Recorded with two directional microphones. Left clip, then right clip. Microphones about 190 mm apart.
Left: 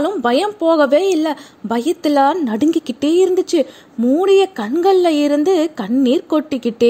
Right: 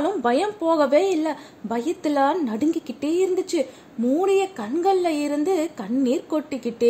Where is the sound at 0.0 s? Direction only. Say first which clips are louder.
Left 5 dB; 30° left (ahead or behind).